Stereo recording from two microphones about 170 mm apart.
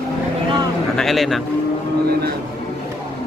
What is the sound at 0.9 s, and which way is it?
Speech, centre (ahead or behind).